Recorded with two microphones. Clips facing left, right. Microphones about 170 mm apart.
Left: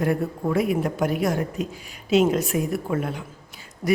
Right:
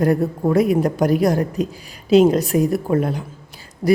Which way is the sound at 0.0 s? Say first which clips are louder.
Right 6 dB; 40° right (ahead or behind).